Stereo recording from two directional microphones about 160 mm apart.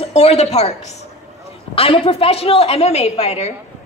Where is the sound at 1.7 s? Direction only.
35° left (ahead or behind).